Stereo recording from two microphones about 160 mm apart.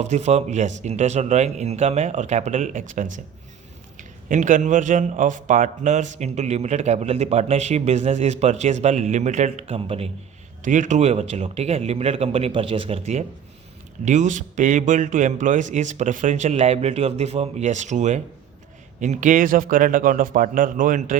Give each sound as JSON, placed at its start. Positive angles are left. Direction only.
{"t": 0.0, "sound": "speech", "side_deg": -45}
{"t": 4.3, "sound": "speech", "side_deg": -50}
{"t": 10.6, "sound": "a man's voice", "side_deg": -55}